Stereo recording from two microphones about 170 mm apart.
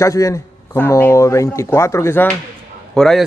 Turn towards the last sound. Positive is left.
turn(degrees=5)  # may be behind; listen again after turning